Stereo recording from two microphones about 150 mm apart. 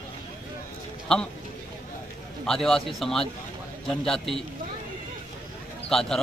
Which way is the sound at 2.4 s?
Centre (ahead or behind).